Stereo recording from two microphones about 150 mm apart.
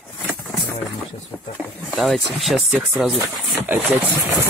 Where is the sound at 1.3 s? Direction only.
10° left (ahead or behind).